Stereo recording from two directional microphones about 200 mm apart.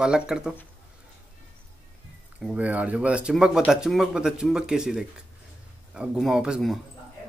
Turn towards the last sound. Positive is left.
turn(degrees=0)  # may be behind; listen again after turning